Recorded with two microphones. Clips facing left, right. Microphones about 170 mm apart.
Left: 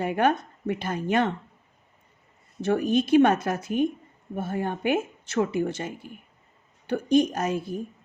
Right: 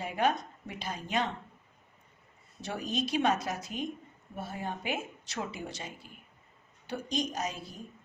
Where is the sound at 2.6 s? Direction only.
55° left (ahead or behind).